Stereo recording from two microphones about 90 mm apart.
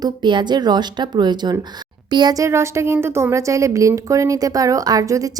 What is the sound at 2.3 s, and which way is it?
A woman's voice, 35° right (ahead or behind).